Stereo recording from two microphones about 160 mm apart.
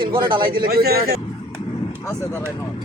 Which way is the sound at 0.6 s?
75° right (ahead or behind).